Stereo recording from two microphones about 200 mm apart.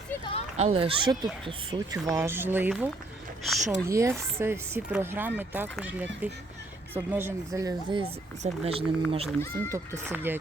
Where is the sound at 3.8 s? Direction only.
15° right (ahead or behind).